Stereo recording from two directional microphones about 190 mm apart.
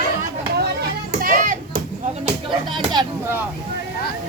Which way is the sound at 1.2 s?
45° right (ahead or behind).